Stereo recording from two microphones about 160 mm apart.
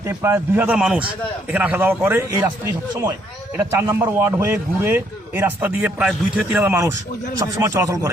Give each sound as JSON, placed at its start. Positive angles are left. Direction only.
{"t": 0.0, "sound": "a man's voice", "side_deg": -15}
{"t": 3.6, "sound": "a man's voice", "side_deg": -15}